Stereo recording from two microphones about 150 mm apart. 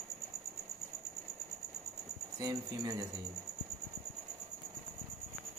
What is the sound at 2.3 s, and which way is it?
Speech, 25° right (ahead or behind).